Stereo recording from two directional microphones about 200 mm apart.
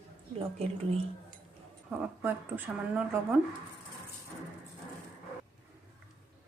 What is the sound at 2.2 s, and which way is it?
A woman's voice, 10° right (ahead or behind).